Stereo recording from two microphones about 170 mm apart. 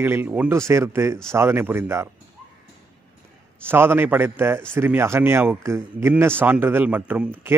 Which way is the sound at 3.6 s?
15° right (ahead or behind).